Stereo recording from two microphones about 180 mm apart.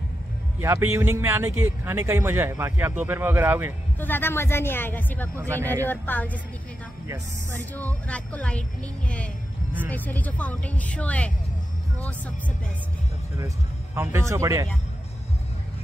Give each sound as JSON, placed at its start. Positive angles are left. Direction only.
{"t": 0.6, "sound": "speech", "side_deg": -15}
{"t": 4.0, "sound": "speech", "side_deg": 10}
{"t": 7.7, "sound": "speech", "side_deg": 10}
{"t": 13.9, "sound": "speech", "side_deg": -15}